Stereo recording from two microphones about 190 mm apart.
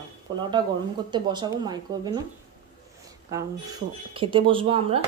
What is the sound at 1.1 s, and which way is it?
Speech, 25° right (ahead or behind).